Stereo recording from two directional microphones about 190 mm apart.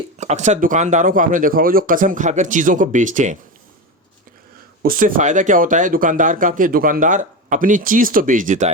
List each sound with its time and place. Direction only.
0.2 s speech: 40° right (ahead or behind)
4.8 s speech: 50° right (ahead or behind)